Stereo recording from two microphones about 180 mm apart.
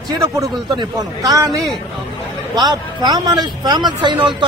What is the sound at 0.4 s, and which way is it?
Speech, 20° right (ahead or behind).